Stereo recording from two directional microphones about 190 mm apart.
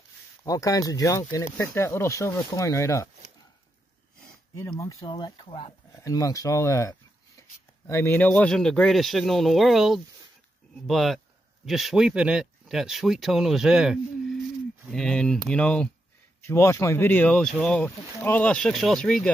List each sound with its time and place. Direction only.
0.5 s speech: 20° left (ahead or behind)
4.6 s speech: 20° left (ahead or behind)
5.9 s speech: 15° left (ahead or behind)